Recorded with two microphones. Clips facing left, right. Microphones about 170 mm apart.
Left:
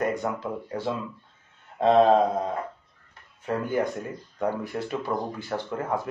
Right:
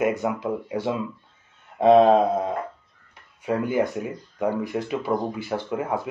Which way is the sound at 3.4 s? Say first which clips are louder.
Right 3 dB; 10° right (ahead or behind).